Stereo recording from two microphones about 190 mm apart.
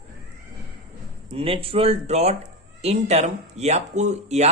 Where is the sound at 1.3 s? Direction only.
30° right (ahead or behind).